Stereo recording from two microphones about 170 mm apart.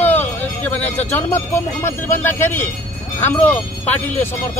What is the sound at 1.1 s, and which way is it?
Speech, 15° left (ahead or behind).